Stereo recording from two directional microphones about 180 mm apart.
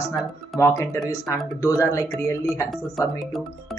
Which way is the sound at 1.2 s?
20° left (ahead or behind).